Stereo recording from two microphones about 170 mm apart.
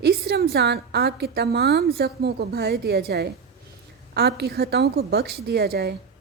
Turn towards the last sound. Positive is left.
turn(degrees=-70)  # may be behind; listen again after turning